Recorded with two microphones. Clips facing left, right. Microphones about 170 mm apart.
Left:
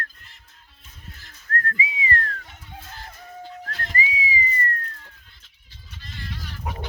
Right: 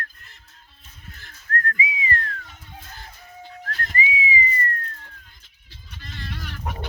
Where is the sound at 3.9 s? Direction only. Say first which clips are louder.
Right 2 dB; 40° left (ahead or behind).